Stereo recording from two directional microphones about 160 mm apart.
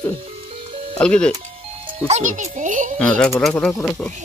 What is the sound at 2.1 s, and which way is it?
Speech, 50° right (ahead or behind).